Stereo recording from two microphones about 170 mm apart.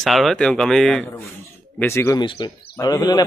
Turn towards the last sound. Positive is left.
turn(degrees=20)  # may be behind; listen again after turning